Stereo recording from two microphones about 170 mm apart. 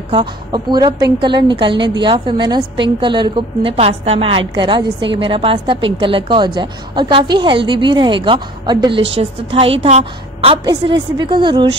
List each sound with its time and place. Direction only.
0.1 s a woman's voice: 25° right (ahead or behind)
10.6 s a woman's voice: 25° right (ahead or behind)